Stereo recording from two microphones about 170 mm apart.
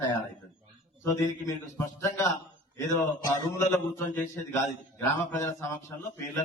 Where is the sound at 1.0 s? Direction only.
20° left (ahead or behind).